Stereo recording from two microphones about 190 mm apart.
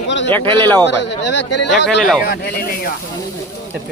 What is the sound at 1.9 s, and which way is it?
Speech, centre (ahead or behind).